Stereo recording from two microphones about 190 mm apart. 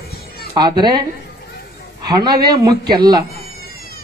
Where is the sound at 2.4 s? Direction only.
20° right (ahead or behind).